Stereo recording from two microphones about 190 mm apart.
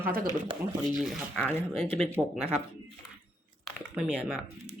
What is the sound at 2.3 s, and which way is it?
Speech, 5° right (ahead or behind).